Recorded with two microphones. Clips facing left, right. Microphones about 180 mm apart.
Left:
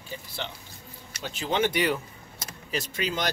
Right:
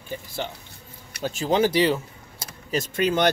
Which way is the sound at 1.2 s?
40° right (ahead or behind).